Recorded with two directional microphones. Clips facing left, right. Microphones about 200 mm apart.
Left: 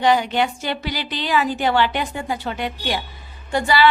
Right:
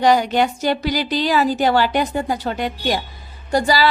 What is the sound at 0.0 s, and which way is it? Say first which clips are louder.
A woman's voice: right 3 dB; 40° right (ahead or behind).